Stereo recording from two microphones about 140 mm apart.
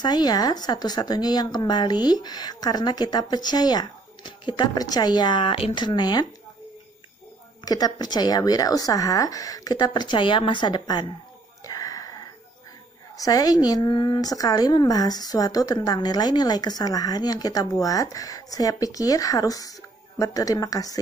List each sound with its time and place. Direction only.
0.0 s speech: 30° left (ahead or behind)
7.6 s speech: 30° left (ahead or behind)
11.6 s a sound: 25° left (ahead or behind)
13.1 s speech: 25° left (ahead or behind)